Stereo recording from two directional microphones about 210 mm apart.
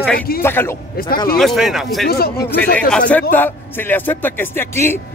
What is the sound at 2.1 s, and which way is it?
Speech, 45° left (ahead or behind).